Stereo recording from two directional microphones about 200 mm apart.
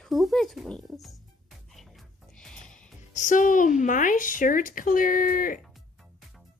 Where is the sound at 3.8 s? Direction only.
40° left (ahead or behind).